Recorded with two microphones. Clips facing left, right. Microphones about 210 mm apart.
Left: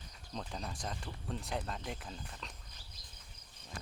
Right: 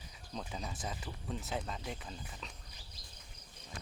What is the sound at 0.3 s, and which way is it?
Speech, 5° right (ahead or behind).